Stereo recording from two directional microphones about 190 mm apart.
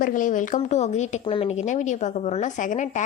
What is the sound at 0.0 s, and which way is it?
A woman's voice, 45° left (ahead or behind).